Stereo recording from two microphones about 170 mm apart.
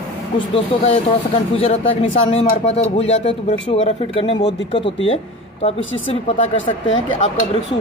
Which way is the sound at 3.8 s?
35° left (ahead or behind).